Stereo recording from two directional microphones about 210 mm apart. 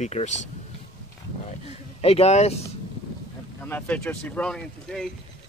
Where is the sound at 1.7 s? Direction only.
30° left (ahead or behind).